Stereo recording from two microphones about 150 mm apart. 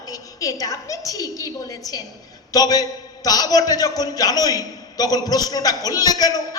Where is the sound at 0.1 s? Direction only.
20° left (ahead or behind).